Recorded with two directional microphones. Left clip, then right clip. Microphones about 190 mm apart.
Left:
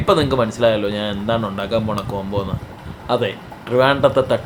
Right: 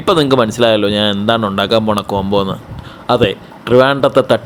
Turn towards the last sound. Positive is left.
turn(degrees=-40)  # may be behind; listen again after turning